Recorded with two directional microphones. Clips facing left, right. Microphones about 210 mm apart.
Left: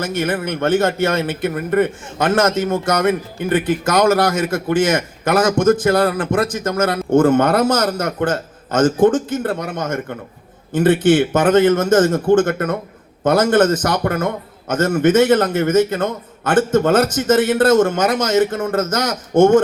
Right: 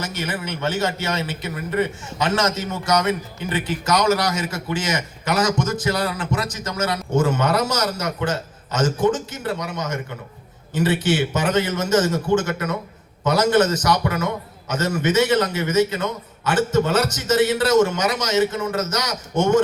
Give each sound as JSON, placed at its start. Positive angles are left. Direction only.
{"t": 0.0, "sound": "a man's voice", "side_deg": 55}